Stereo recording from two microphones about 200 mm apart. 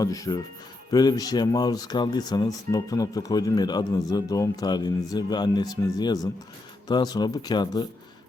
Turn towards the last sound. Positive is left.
turn(degrees=25)  # may be behind; listen again after turning